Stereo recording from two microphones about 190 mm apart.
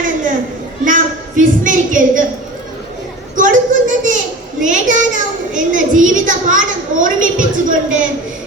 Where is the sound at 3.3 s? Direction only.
45° right (ahead or behind).